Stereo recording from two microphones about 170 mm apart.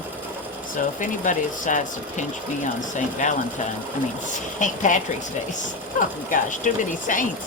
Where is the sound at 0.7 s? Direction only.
50° left (ahead or behind).